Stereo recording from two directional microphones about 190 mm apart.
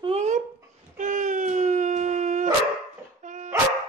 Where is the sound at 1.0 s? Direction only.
40° right (ahead or behind).